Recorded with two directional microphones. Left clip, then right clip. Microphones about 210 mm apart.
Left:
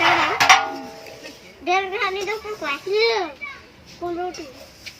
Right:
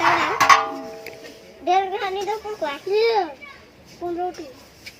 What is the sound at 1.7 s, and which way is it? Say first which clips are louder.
A child's voice: right 1 dB; centre (ahead or behind).